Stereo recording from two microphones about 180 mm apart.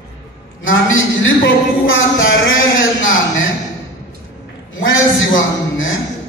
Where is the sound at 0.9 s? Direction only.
90° left.